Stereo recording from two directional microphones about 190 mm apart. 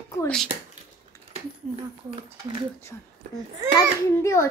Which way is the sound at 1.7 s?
25° right (ahead or behind).